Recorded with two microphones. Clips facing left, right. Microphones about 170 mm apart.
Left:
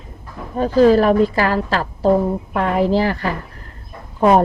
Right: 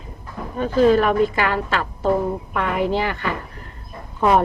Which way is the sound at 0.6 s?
35° left (ahead or behind).